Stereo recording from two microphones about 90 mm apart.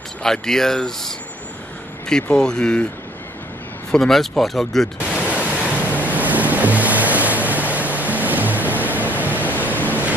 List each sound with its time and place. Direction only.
0.2 s speech: 5° left (ahead or behind)
3.9 s speech: 5° left (ahead or behind)
5.2 s waves: 15° right (ahead or behind)